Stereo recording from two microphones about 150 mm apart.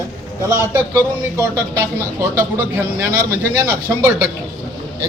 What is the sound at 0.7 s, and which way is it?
Speech, 15° right (ahead or behind).